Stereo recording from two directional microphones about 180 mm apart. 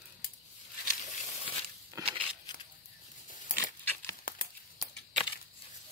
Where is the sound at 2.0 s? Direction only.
20° right (ahead or behind).